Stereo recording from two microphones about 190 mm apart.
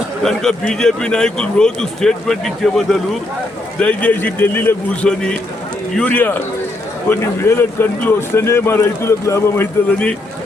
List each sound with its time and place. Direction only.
0.2 s a man's voice: 5° left (ahead or behind)